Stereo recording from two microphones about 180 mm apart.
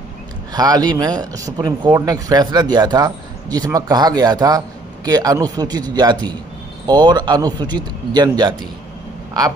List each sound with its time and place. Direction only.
0.5 s speech: 20° right (ahead or behind)